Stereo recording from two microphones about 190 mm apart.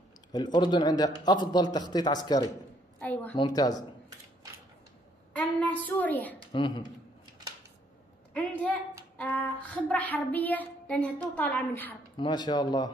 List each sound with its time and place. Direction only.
0.3 s a man's voice: 20° left (ahead or behind)
3.0 s child singing: 10° left (ahead or behind)
3.3 s a man's voice: 20° left (ahead or behind)
5.3 s child singing: 10° left (ahead or behind)
6.5 s a man's voice: 25° left (ahead or behind)
8.3 s a woman's voice: 10° left (ahead or behind)
9.2 s child singing: 10° left (ahead or behind)
12.2 s a man's voice: 20° left (ahead or behind)